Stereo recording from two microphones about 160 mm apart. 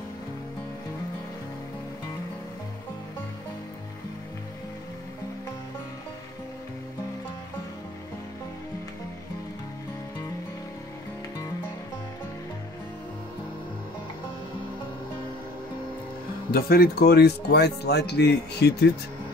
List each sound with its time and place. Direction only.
16.5 s speech: 70° left (ahead or behind); by 18.9 s 90° left